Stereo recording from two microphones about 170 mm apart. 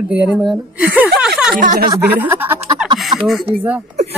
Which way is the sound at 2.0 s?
10° right (ahead or behind).